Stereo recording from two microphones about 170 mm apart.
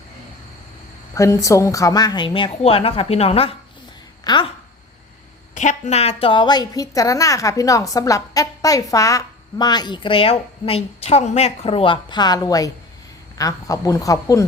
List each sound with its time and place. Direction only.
1.1 s a woman's voice: 15° left (ahead or behind)
5.5 s a woman's voice: 45° left (ahead or behind); by 14.4 s 20° left (ahead or behind)